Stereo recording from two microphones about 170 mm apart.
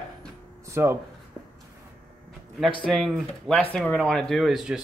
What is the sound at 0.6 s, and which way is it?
Speech, 15° right (ahead or behind).